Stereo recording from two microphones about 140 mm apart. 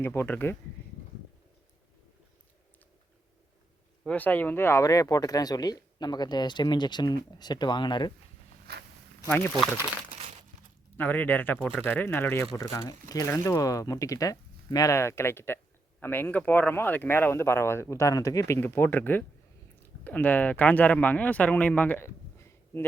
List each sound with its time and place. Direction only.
0.0 s speech: 15° left (ahead or behind)
4.0 s speech: 10° left (ahead or behind); by 8.1 s 35° left (ahead or behind)
10.9 s speech: 10° left (ahead or behind)